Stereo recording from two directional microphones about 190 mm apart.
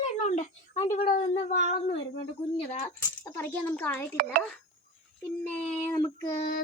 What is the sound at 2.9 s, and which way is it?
Speech, 15° left (ahead or behind).